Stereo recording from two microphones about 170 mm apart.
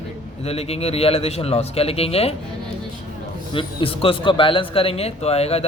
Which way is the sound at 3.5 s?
30° left (ahead or behind).